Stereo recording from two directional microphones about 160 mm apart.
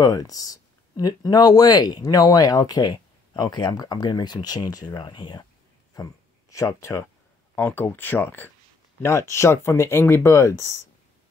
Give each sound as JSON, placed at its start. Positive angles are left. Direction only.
{"t": 0.0, "sound": "speech", "side_deg": 20}